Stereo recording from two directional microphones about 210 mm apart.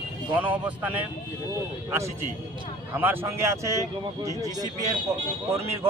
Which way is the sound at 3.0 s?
10° right (ahead or behind).